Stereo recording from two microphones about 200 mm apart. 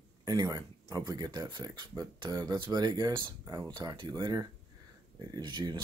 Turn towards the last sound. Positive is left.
turn(degrees=-20)  # may be behind; listen again after turning